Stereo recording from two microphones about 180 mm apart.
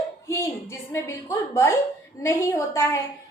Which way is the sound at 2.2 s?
15° left (ahead or behind).